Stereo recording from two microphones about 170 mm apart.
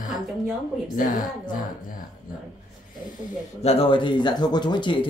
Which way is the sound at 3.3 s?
35° left (ahead or behind).